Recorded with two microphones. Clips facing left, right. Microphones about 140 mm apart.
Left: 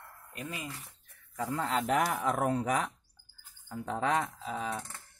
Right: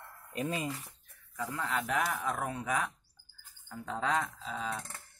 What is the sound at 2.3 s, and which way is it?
Speech, 55° left (ahead or behind).